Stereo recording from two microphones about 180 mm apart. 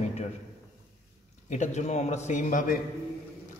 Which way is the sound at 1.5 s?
40° left (ahead or behind).